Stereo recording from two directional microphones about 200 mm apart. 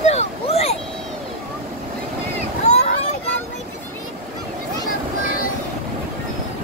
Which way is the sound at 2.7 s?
35° left (ahead or behind).